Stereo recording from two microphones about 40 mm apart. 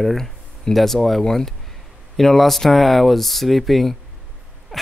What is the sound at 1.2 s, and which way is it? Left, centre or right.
Speech, centre.